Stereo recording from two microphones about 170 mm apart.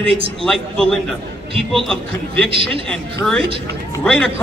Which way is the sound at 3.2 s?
15° left (ahead or behind).